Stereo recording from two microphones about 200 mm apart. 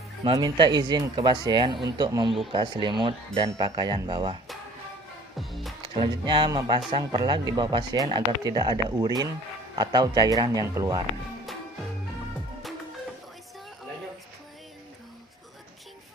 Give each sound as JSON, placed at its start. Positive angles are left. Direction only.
{"t": 0.3, "sound": "speech", "side_deg": -20}
{"t": 5.4, "sound": "speech", "side_deg": 0}
{"t": 5.8, "sound": "speech", "side_deg": -25}